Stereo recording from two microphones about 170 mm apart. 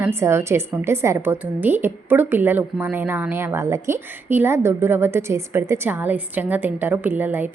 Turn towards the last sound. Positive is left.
turn(degrees=-10)  # may be behind; listen again after turning